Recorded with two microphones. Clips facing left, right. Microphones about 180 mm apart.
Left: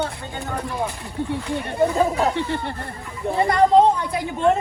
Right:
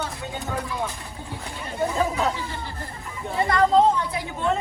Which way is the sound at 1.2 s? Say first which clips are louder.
Left 8 dB; 65° left (ahead or behind).